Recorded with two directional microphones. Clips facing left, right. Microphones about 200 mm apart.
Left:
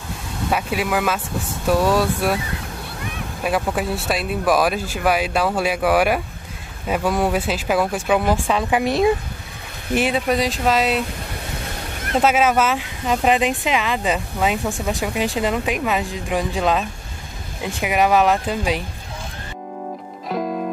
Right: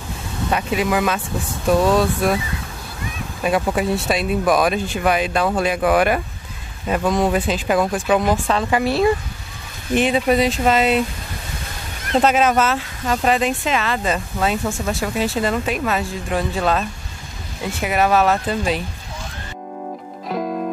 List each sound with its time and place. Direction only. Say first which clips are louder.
0.5 s speech: right 2 dB; 5° left (ahead or behind)
3.4 s speech: right 3 dB; centre (ahead or behind)
8.8 s speech: even; 20° left (ahead or behind)
9.9 s speech: right 3 dB; 5° left (ahead or behind)
12.2 s speech: right 1 dB; 5° left (ahead or behind)
20.2 s music: even; centre (ahead or behind)